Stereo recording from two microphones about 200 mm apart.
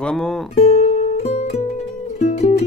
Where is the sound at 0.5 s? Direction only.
35° left (ahead or behind).